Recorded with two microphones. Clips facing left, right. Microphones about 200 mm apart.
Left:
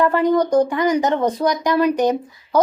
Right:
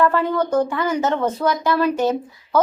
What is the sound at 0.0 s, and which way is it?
Speech, 15° left (ahead or behind).